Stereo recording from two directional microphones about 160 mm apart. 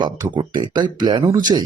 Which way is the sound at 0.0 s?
30° right (ahead or behind).